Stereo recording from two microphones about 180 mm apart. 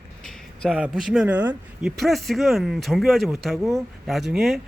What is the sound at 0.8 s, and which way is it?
Speech, 5° right (ahead or behind).